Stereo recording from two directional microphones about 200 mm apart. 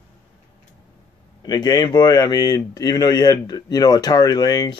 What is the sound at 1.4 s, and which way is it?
Speech, 20° left (ahead or behind).